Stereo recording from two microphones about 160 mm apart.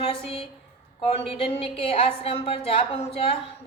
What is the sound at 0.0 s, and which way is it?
Speech, 35° left (ahead or behind).